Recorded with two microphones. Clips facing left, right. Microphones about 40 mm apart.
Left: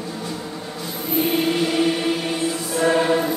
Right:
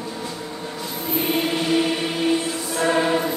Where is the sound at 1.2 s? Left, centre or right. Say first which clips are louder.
Left 3 dB; centre.